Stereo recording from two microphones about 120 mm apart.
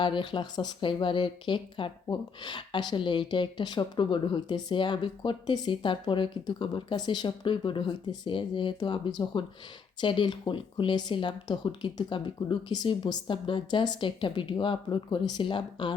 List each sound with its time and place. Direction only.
0.0 s speech: 40° left (ahead or behind)